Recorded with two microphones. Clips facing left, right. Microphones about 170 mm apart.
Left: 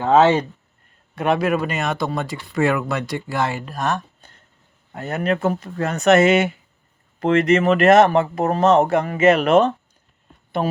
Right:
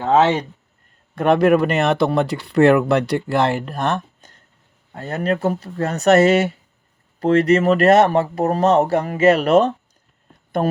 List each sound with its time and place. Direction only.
1.1 s speech: 50° right (ahead or behind)
4.9 s speech: 30° right (ahead or behind)
10.6 s speech: 45° right (ahead or behind)